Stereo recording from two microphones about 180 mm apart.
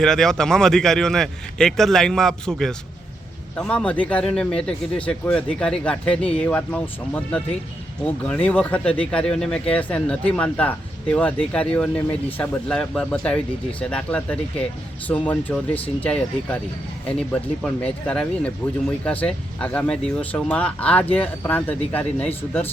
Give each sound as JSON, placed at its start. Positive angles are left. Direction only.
{"t": 0.0, "sound": "speech", "side_deg": 5}